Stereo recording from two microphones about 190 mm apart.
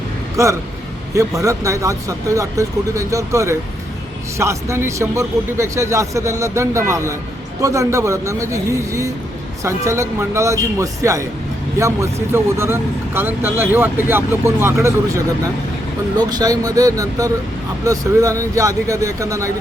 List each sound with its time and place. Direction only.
0.4 s speech: 15° right (ahead or behind)